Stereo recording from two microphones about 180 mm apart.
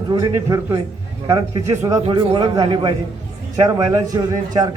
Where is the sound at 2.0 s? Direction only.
30° right (ahead or behind).